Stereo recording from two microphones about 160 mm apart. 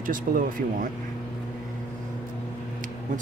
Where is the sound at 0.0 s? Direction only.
60° right (ahead or behind).